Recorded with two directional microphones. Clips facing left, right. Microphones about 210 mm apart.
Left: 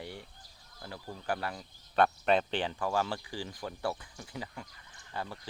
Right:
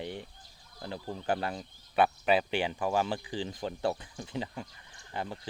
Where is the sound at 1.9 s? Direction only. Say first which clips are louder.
Right 1 dB; 5° right (ahead or behind).